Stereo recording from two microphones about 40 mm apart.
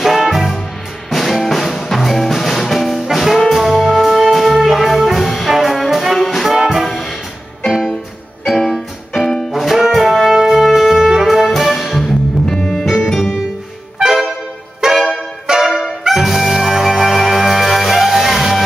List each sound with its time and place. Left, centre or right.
0.0 s music: centre
5.2 s brass instrument: centre
6.9 s music: centre
9.2 s music: centre
12.4 s music: centre
12.8 s music: centre